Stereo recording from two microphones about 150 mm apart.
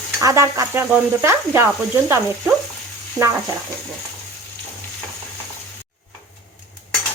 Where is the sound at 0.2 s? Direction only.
20° right (ahead or behind).